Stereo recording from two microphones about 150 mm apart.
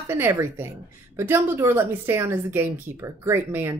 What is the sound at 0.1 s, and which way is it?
A woman's voice, 15° right (ahead or behind).